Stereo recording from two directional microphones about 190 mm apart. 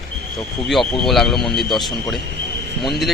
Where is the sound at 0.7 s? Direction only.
Centre (ahead or behind).